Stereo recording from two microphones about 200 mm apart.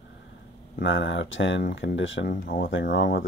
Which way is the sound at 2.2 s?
45° left (ahead or behind).